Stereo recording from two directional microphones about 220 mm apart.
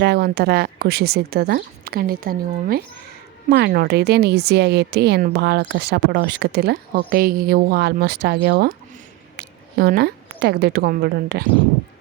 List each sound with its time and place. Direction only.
0.0 s a woman's voice: 45° right (ahead or behind)